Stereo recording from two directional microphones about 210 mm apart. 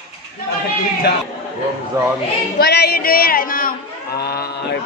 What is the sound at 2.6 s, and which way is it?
Speech, 50° left (ahead or behind).